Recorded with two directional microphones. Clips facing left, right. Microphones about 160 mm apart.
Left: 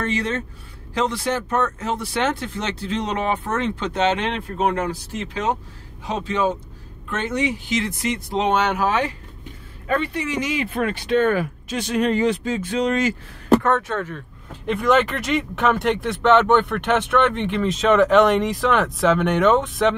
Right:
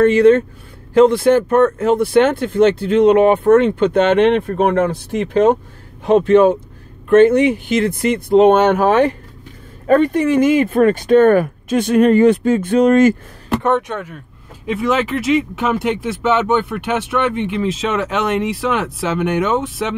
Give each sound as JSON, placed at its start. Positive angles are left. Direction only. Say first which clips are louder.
{"t": 0.0, "sound": "speech", "louder": "right 14 dB", "side_deg": -55}
{"t": 13.6, "sound": "speech", "louder": "right 3 dB", "side_deg": -15}
{"t": 14.7, "sound": "speech", "louder": "right 1 dB", "side_deg": -5}